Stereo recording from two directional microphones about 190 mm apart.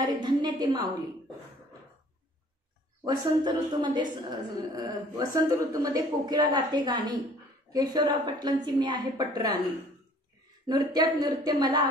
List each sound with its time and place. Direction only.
0.0 s a sound: 25° right (ahead or behind)
3.0 s a man's voice: 20° right (ahead or behind)
10.7 s a man's voice: 20° right (ahead or behind)